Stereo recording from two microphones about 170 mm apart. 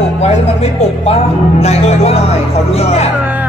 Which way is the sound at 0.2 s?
35° left (ahead or behind).